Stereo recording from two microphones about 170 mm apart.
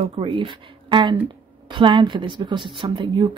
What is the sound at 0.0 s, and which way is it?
A woman's voice, 30° right (ahead or behind).